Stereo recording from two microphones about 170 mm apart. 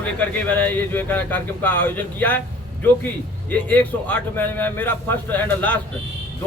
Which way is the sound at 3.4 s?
10° left (ahead or behind).